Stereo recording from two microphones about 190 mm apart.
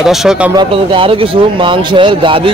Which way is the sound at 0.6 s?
30° right (ahead or behind).